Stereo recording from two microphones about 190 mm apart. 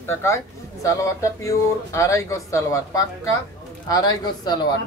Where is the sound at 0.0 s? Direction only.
15° left (ahead or behind).